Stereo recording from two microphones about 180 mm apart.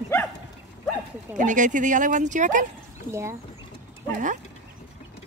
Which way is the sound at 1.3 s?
45° right (ahead or behind).